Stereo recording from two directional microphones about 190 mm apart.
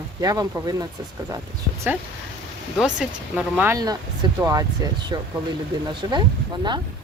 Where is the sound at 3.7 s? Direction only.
20° right (ahead or behind).